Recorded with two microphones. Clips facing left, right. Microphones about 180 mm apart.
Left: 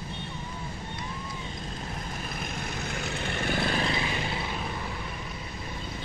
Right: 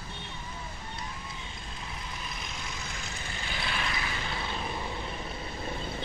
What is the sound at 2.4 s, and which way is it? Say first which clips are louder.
Vehicle: left 6 dB; 55° left (ahead or behind).